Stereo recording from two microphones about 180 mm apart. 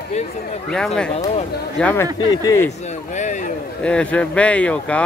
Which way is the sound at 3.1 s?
40° left (ahead or behind).